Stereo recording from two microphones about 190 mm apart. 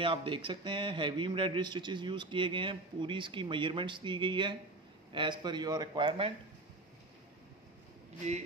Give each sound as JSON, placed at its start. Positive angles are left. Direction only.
{"t": 0.0, "sound": "speech", "side_deg": -25}